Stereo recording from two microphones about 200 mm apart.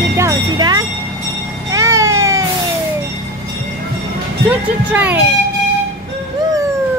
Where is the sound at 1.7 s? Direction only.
15° right (ahead or behind).